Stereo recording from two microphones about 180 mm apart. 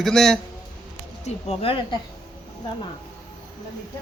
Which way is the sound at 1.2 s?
35° left (ahead or behind).